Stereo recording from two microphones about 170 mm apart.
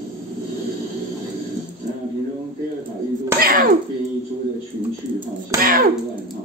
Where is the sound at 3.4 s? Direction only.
60° right (ahead or behind).